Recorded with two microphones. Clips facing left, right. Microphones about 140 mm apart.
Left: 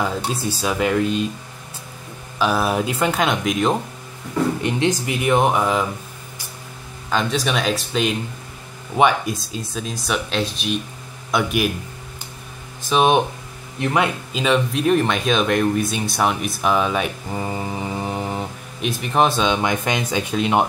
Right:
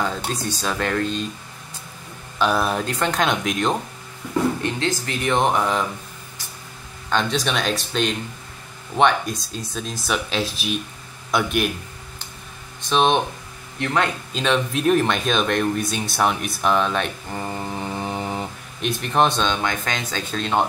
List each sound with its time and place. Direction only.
0.0 s speech: 5° left (ahead or behind)
2.3 s speech: 5° left (ahead or behind)
4.6 s speech: 15° left (ahead or behind)
7.1 s speech: centre (ahead or behind)
12.8 s speech: 5° left (ahead or behind)